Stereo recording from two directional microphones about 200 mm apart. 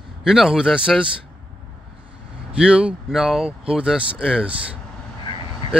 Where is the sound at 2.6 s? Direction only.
5° right (ahead or behind).